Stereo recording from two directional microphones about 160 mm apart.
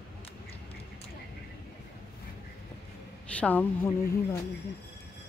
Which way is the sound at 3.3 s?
10° left (ahead or behind).